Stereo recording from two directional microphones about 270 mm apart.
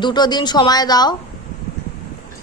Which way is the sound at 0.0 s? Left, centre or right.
Centre.